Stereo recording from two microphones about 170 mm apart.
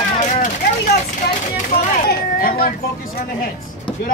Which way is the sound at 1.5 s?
50° left (ahead or behind).